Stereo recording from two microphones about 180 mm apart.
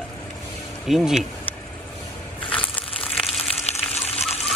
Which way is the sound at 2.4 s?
30° left (ahead or behind).